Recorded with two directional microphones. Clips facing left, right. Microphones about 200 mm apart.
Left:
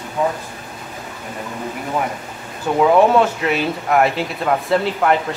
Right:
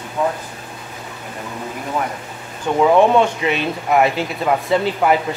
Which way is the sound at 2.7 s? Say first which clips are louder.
Even; centre (ahead or behind).